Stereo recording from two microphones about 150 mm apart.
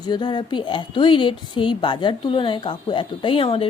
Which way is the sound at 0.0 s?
30° left (ahead or behind).